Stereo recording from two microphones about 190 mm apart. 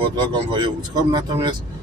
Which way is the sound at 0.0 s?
25° right (ahead or behind).